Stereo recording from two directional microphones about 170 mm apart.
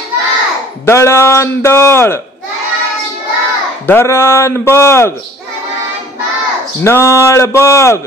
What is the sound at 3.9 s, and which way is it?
Speech, 15° left (ahead or behind).